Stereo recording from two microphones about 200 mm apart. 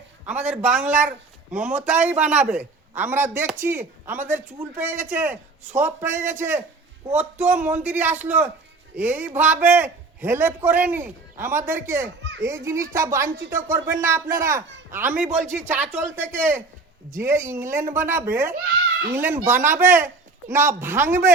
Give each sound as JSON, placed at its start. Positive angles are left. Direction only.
{"t": 0.3, "sound": "a man's voice", "side_deg": -5}
{"t": 12.2, "sound": "children playing", "side_deg": -65}
{"t": 12.5, "sound": "a man's voice", "side_deg": -15}